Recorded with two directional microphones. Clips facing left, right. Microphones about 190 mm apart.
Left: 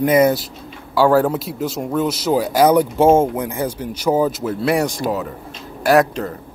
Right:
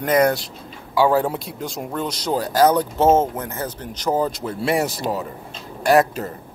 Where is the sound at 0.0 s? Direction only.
5° left (ahead or behind).